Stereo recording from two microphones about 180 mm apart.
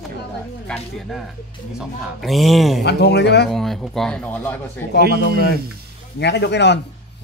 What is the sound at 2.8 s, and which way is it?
Speech, 70° left (ahead or behind).